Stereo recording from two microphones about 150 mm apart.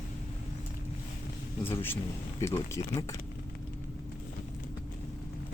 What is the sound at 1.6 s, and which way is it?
A man's voice, 15° left (ahead or behind).